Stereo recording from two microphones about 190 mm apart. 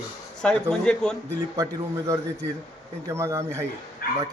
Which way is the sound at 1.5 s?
15° right (ahead or behind).